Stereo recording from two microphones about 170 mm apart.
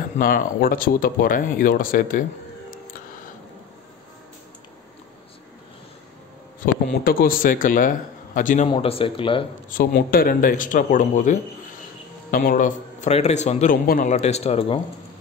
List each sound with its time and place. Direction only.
0.2 s speech: 60° left (ahead or behind)
6.6 s a man's voice: 60° left (ahead or behind)
8.6 s speech: 30° left (ahead or behind)
9.9 s a man's voice: 60° left (ahead or behind); by 13.7 s 40° left (ahead or behind)
13.8 s speech: 55° left (ahead or behind)
14.1 s speech: 40° left (ahead or behind)